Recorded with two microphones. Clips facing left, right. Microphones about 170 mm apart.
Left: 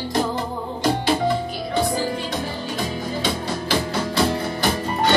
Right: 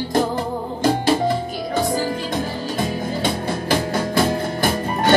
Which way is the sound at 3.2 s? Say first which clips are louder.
Right 4 dB; 50° right (ahead or behind).